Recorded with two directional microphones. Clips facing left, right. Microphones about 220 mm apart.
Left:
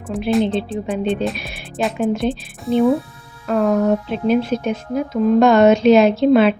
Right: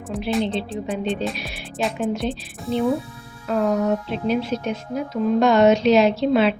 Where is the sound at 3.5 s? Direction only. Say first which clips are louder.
Left 4 dB; 50° left (ahead or behind).